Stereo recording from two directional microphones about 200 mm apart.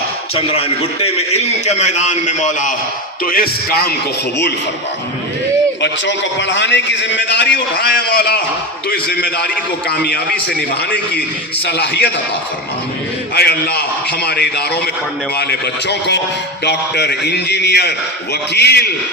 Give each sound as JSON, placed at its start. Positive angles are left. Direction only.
{"t": 1.0, "sound": "a man's voice", "side_deg": 35}
{"t": 5.8, "sound": "a man's voice", "side_deg": 65}
{"t": 11.7, "sound": "a man's voice", "side_deg": 55}
{"t": 13.3, "sound": "a man's voice", "side_deg": 55}